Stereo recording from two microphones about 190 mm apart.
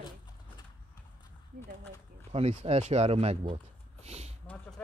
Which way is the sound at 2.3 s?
35° right (ahead or behind).